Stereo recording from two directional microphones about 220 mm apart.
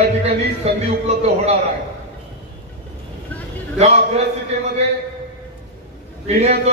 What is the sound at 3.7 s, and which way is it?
Speech, 30° right (ahead or behind).